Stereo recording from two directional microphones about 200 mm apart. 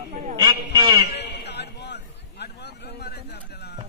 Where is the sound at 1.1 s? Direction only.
60° left (ahead or behind).